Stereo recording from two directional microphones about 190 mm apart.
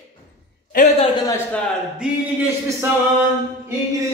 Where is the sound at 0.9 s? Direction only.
20° left (ahead or behind).